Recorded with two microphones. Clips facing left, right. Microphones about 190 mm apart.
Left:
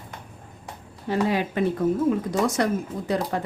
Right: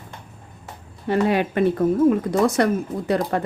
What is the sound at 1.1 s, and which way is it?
Speech, 60° right (ahead or behind).